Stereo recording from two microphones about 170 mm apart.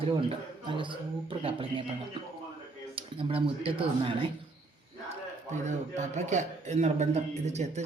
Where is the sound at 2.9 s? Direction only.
30° right (ahead or behind).